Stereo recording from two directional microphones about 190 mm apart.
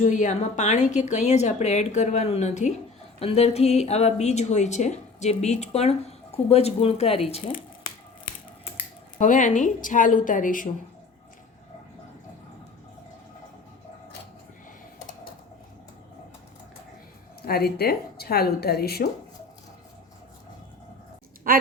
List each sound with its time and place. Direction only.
0.0 s speech: 40° left (ahead or behind)
9.1 s a woman's voice: 40° left (ahead or behind)
14.9 s typing: 45° left (ahead or behind)
17.4 s speech: 55° left (ahead or behind)
21.5 s a woman's voice: 50° right (ahead or behind)